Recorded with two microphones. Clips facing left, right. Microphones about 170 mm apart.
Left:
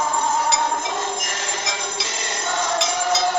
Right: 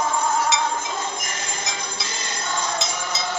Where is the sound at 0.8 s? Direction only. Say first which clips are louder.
Left 3 dB; 85° left.